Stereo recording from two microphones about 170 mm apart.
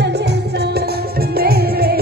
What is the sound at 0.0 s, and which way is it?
Music, 80° right.